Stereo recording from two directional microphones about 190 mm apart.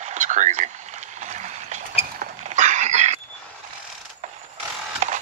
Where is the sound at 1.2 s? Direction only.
40° right (ahead or behind).